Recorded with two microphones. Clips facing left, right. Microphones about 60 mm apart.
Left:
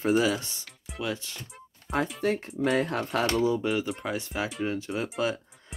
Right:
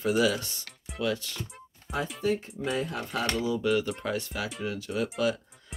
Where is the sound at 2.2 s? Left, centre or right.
Left.